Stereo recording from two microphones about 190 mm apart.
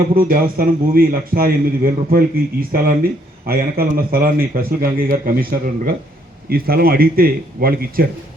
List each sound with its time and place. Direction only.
0.2 s a man's voice: 50° right (ahead or behind)